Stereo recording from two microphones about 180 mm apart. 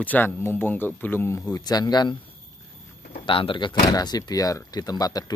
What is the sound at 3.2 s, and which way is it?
Speech, 30° left (ahead or behind).